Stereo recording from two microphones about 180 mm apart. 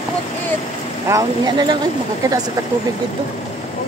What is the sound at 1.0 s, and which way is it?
Speech, 20° right (ahead or behind).